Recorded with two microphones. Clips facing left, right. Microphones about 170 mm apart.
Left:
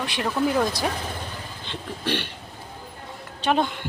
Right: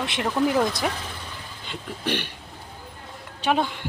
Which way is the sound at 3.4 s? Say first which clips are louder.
Left 1 dB; 5° right (ahead or behind).